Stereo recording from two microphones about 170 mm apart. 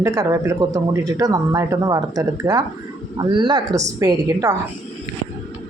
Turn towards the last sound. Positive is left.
turn(degrees=-20)  # may be behind; listen again after turning